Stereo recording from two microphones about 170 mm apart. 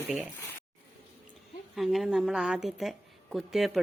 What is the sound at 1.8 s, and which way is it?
A woman's voice, centre (ahead or behind).